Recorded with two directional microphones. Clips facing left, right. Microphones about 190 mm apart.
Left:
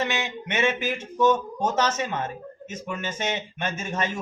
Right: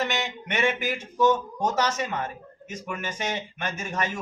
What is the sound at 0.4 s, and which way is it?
Speech, 20° left (ahead or behind).